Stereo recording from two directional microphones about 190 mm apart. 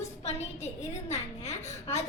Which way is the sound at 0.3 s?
35° left (ahead or behind).